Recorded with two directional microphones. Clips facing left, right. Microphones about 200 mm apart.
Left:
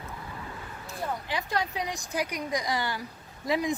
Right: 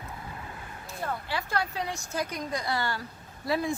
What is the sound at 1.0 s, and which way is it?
A woman's voice, 15° left (ahead or behind).